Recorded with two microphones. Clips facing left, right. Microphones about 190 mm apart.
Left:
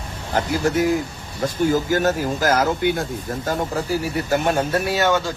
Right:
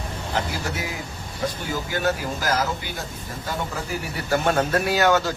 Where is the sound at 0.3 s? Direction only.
50° left (ahead or behind).